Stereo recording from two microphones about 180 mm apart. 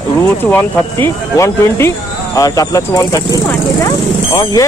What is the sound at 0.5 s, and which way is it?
Speech, 10° left (ahead or behind).